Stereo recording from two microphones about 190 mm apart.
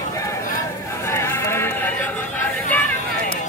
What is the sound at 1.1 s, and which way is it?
Sheep, 15° left (ahead or behind).